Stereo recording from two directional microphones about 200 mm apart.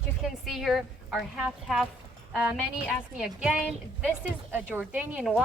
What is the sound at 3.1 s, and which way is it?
A woman's voice, 5° right (ahead or behind).